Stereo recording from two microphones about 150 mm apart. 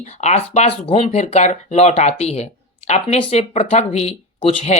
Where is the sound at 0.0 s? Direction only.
50° left (ahead or behind).